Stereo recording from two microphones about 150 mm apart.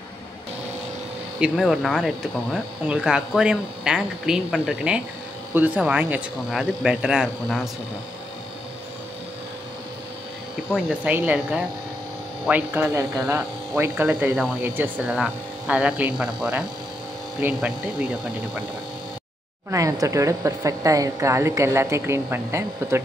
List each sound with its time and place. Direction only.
1.4 s speech: centre (ahead or behind)
10.7 s speech: 10° right (ahead or behind)
19.7 s a woman's voice: 20° right (ahead or behind)